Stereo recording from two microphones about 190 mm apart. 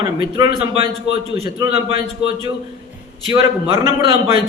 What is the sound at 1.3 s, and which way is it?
Speech, 30° right (ahead or behind).